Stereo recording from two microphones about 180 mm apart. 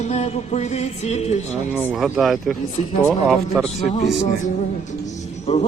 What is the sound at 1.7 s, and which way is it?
Speech, centre (ahead or behind).